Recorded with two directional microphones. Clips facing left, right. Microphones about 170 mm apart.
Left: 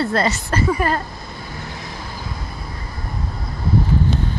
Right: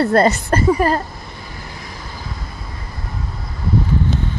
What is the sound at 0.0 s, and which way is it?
Speech, 55° right (ahead or behind).